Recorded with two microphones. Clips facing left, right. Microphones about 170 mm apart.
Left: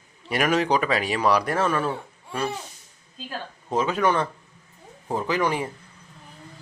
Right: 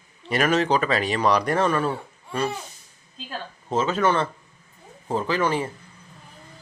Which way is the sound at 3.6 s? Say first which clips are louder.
Right 1 dB; 10° left (ahead or behind).